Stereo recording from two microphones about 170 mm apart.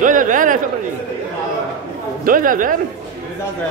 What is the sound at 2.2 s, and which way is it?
Speech, 55° right (ahead or behind).